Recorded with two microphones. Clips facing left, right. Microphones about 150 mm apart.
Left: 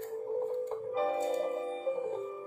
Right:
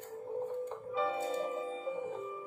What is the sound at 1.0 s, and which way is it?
Music, 40° left (ahead or behind).